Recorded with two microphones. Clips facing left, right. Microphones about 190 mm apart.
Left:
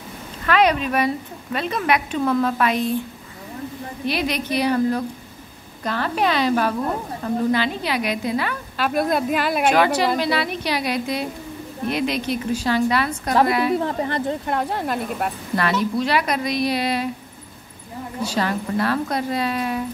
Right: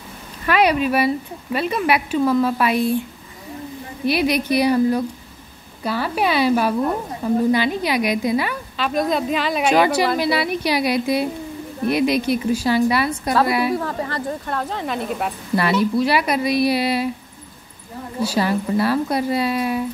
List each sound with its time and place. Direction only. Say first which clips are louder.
0.5 s a woman's voice: right 1 dB; 10° right (ahead or behind)
4.0 s a woman's voice: right 5 dB; 10° right (ahead or behind)
8.7 s a woman's voice: even; 5° left (ahead or behind)
9.7 s a woman's voice: right 2 dB; 10° right (ahead or behind)
13.7 s speech: left 2 dB; 20° left (ahead or behind); by 15.3 s centre (ahead or behind)
15.5 s a woman's voice: right 4 dB; 10° right (ahead or behind)
18.2 s a woman's voice: right 4 dB; 10° right (ahead or behind)